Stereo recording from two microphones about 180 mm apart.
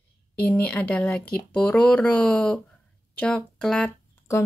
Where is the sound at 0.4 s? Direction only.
10° left (ahead or behind).